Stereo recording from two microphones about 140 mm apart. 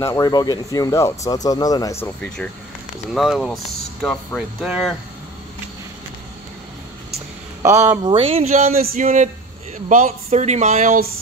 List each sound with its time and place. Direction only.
0.0 s speech: 25° left (ahead or behind)
2.1 s speech: 5° left (ahead or behind)
7.6 s speech: 20° right (ahead or behind)
8.0 s a sound: 40° right (ahead or behind)
8.5 s speech: 65° right (ahead or behind)